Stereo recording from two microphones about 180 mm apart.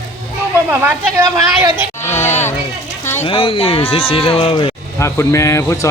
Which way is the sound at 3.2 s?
30° left (ahead or behind).